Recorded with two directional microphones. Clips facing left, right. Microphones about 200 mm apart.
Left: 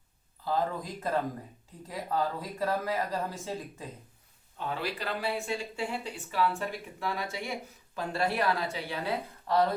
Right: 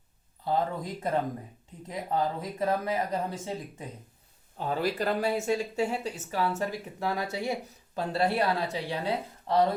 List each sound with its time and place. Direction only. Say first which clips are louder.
0.4 s speech: right 2 dB; 20° right (ahead or behind)
4.5 s speech: right 5 dB; 40° right (ahead or behind)
7.1 s speech: right 5 dB; 30° right (ahead or behind)